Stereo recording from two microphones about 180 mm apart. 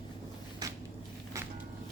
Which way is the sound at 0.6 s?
20° right (ahead or behind).